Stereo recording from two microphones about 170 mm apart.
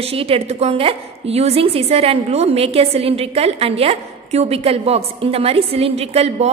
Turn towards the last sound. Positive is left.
turn(degrees=-35)  # may be behind; listen again after turning